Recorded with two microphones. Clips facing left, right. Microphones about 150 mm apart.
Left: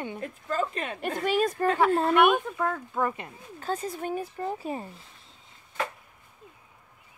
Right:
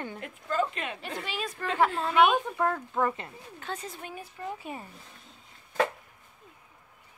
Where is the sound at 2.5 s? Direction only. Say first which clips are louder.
Right 1 dB; centre (ahead or behind).